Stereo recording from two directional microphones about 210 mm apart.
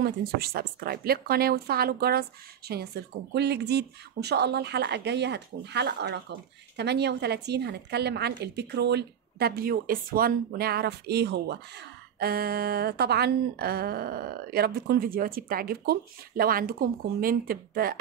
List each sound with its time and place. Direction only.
0.0 s speech: 45° right (ahead or behind)